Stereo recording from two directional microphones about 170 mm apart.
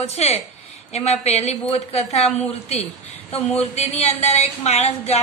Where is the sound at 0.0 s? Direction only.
40° left (ahead or behind).